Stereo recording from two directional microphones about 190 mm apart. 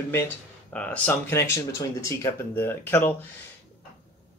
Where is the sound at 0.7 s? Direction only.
5° left (ahead or behind).